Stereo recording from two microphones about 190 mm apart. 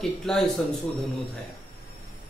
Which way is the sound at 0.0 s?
Centre (ahead or behind).